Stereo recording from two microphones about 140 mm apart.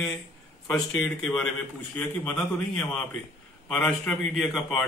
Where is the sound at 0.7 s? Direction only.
5° left (ahead or behind).